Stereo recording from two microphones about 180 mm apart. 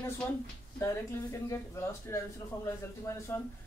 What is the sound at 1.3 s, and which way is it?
Speech, 15° left (ahead or behind).